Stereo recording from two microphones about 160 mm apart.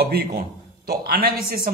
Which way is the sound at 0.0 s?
75° right (ahead or behind).